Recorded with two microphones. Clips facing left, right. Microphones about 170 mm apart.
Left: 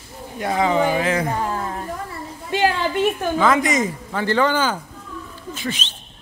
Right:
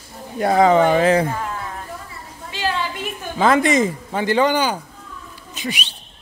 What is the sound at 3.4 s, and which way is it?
Speech, 30° right (ahead or behind).